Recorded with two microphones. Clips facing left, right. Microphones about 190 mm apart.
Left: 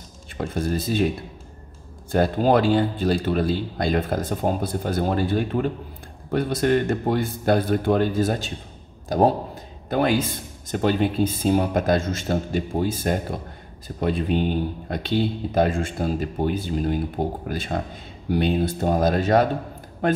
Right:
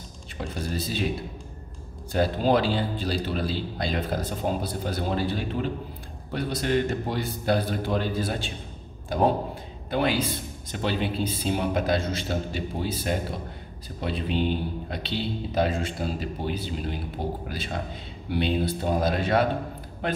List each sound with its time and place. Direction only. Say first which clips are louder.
0.6 s a man's voice: left 7 dB; 50° left (ahead or behind)
2.1 s a man's voice: left 4 dB; 50° left (ahead or behind)
18.3 s a man's voice: left 4 dB; 45° left (ahead or behind)